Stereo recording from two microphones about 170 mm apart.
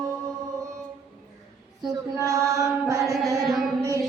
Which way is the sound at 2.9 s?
20° right (ahead or behind).